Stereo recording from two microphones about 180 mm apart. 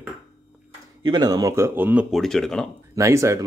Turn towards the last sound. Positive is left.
turn(degrees=-15)  # may be behind; listen again after turning